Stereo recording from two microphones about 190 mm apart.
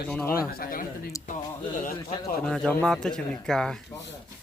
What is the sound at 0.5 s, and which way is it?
Speech, 50° left (ahead or behind).